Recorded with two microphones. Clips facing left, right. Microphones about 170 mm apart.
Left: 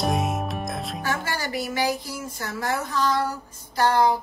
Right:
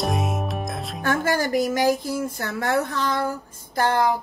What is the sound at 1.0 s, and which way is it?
Speech, 50° right (ahead or behind).